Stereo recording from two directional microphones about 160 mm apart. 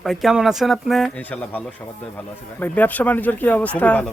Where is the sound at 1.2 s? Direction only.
10° left (ahead or behind).